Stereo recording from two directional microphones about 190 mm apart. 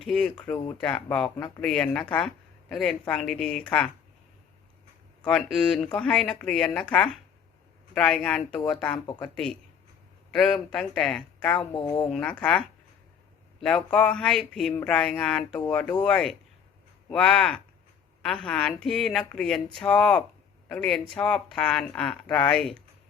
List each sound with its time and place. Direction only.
0.0 s speech: 5° left (ahead or behind)
1.1 s speech: 5° left (ahead or behind)
5.2 s speech: 5° left (ahead or behind)
11.7 s speech: 20° left (ahead or behind)
12.0 s speech: 5° left (ahead or behind)